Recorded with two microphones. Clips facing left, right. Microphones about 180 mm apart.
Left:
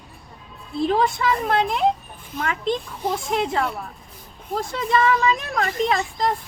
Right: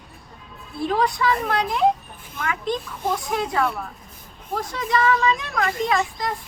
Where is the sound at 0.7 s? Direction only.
25° left (ahead or behind).